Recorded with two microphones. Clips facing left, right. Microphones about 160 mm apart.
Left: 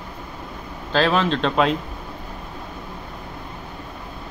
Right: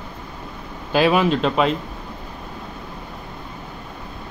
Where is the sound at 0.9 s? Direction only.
10° right (ahead or behind).